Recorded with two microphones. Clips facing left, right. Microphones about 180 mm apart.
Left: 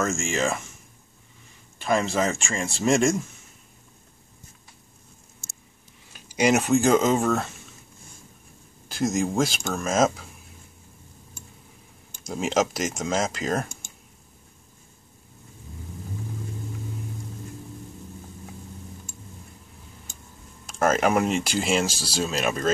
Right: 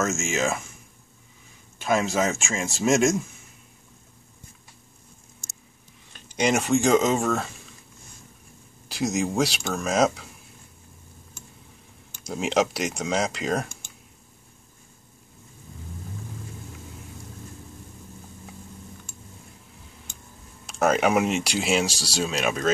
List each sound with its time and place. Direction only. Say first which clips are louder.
0.0 s speech: even; centre (ahead or behind)
1.8 s speech: even; centre (ahead or behind)
5.4 s a sound: even; 15° right (ahead or behind)
6.1 s speech: left 2 dB; 5° left (ahead or behind)
8.8 s speech: left 1 dB; centre (ahead or behind)
12.3 s speech: even; centre (ahead or behind)
20.6 s speech: even; centre (ahead or behind)